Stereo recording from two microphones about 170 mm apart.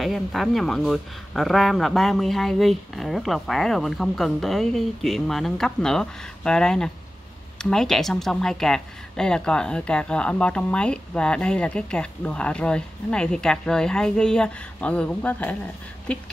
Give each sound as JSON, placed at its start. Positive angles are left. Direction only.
{"t": 0.0, "sound": "speech", "side_deg": 0}